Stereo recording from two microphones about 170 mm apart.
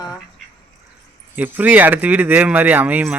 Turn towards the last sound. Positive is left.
turn(degrees=-10)  # may be behind; listen again after turning